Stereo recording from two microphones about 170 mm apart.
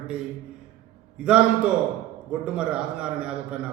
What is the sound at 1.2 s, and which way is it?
A man's voice, 5° right (ahead or behind).